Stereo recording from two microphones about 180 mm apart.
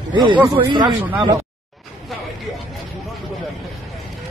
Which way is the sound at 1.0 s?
10° right (ahead or behind).